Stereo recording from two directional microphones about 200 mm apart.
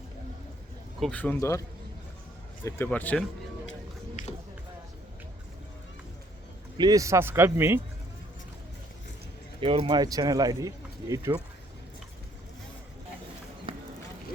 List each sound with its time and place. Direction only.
0.9 s speech: 5° left (ahead or behind)
2.6 s speech: 10° left (ahead or behind)
4.2 s run: 40° left (ahead or behind)
6.7 s speech: 20° right (ahead or behind)
9.6 s speech: 25° right (ahead or behind)
13.7 s run: 25° right (ahead or behind)